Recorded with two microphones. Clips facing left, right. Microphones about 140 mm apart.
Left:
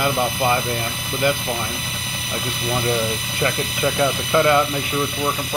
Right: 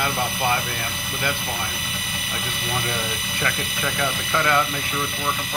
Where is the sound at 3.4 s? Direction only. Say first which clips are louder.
Left 6 dB; 25° left (ahead or behind).